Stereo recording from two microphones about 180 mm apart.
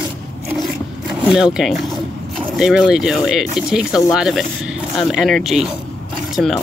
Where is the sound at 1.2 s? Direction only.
5° right (ahead or behind).